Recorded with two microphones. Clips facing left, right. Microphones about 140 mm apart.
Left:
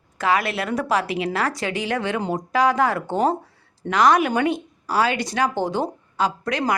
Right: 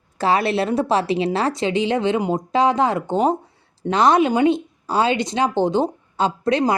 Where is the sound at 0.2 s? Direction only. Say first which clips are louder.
Right 3 dB; 30° right (ahead or behind).